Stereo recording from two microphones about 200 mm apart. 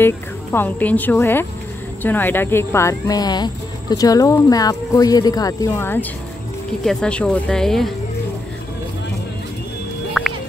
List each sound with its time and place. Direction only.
0.0 s speech: 10° left (ahead or behind)
10.2 s music: centre (ahead or behind)